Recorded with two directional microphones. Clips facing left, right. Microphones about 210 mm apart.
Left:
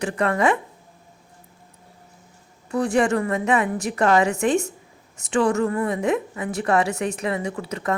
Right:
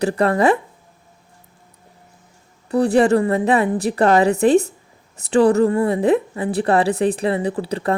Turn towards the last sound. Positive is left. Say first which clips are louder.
# right 6 dB
turn(degrees=-30)  # may be behind; listen again after turning